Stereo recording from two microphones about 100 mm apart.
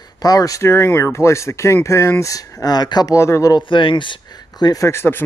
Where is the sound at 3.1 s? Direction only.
30° left (ahead or behind).